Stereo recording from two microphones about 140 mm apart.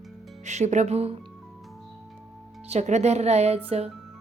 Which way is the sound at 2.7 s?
55° right (ahead or behind).